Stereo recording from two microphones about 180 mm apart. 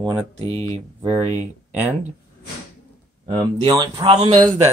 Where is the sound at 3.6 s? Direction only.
25° right (ahead or behind).